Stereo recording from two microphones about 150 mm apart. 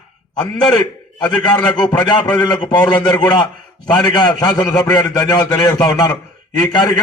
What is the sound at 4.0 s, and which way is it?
A man's voice, 30° left (ahead or behind).